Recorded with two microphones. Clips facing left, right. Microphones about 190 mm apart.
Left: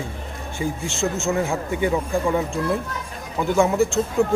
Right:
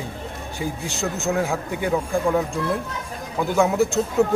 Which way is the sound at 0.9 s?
15° right (ahead or behind).